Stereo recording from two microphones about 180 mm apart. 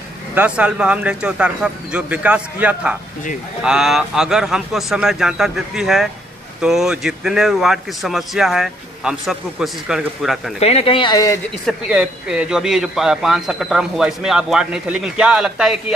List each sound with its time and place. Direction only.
0.3 s speech: 10° right (ahead or behind)
10.6 s speech: 35° left (ahead or behind)
11.6 s speech: 5° right (ahead or behind)